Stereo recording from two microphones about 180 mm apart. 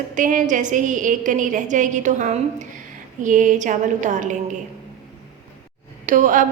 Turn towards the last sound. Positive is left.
turn(degrees=-45)  # may be behind; listen again after turning